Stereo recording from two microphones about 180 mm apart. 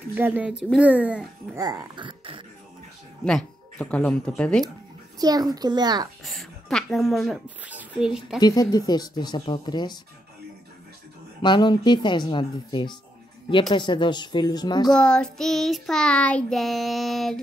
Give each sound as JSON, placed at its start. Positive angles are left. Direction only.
{"t": 0.1, "sound": "a child's voice", "side_deg": -10}
{"t": 1.6, "sound": "speech", "side_deg": -20}
{"t": 3.3, "sound": "speech", "side_deg": 5}
{"t": 5.2, "sound": "speech", "side_deg": -20}
{"t": 6.2, "sound": "speech", "side_deg": 0}
{"t": 8.4, "sound": "speech", "side_deg": 20}
{"t": 11.4, "sound": "speech", "side_deg": 25}
{"t": 14.9, "sound": "child singing", "side_deg": 5}